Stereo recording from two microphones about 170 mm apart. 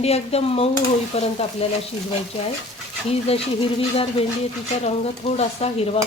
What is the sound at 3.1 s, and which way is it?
Stir, 35° left (ahead or behind).